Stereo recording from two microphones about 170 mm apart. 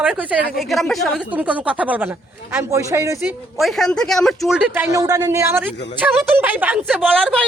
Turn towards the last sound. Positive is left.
turn(degrees=0)  # may be behind; listen again after turning